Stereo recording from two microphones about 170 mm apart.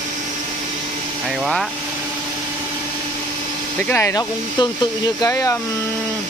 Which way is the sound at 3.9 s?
15° left (ahead or behind).